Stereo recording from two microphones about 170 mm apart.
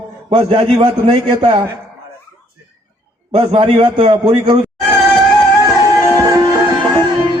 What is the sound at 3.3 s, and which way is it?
Speech, 35° right (ahead or behind).